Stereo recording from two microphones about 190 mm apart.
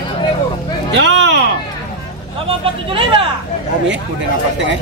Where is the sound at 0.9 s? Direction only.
65° right (ahead or behind).